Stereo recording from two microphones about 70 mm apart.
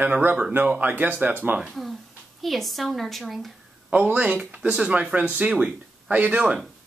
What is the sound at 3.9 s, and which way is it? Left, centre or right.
Speech, centre.